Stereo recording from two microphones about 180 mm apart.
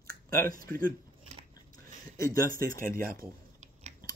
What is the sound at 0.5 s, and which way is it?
Speech, 50° right (ahead or behind).